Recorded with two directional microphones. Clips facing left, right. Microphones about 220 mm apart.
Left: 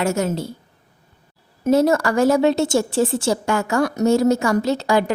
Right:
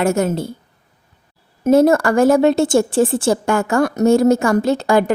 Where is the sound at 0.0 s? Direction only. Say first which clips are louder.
Right 4 dB; 55° right (ahead or behind).